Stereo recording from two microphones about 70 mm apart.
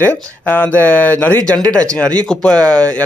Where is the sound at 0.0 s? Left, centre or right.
Left.